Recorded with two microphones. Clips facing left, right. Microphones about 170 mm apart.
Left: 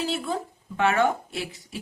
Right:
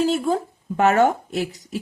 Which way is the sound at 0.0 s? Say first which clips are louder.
Right 8 dB; 45° right (ahead or behind).